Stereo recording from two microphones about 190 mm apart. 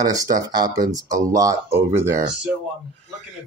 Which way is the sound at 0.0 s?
20° right (ahead or behind).